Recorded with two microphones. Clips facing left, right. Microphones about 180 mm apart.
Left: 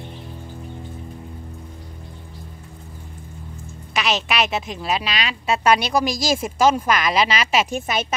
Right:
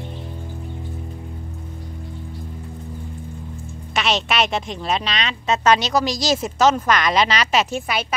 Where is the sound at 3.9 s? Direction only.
Centre (ahead or behind).